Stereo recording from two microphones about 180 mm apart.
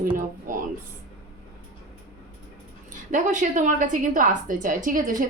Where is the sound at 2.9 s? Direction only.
45° right (ahead or behind).